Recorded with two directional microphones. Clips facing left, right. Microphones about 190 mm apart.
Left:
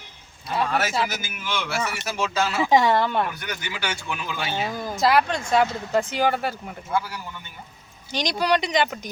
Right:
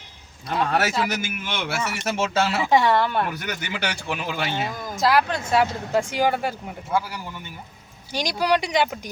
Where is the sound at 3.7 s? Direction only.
60° right (ahead or behind).